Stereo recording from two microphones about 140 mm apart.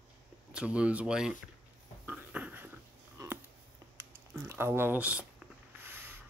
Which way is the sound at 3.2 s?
25° right (ahead or behind).